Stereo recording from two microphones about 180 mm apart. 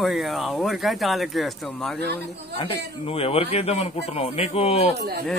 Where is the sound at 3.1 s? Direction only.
35° left (ahead or behind).